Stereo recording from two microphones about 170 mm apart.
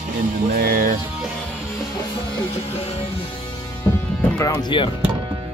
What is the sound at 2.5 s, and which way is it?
Music, 35° left (ahead or behind).